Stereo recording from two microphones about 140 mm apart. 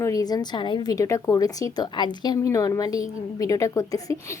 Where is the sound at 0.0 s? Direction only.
25° left (ahead or behind).